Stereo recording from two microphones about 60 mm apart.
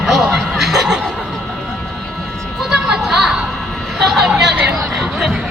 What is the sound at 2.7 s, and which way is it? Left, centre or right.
Speech, centre.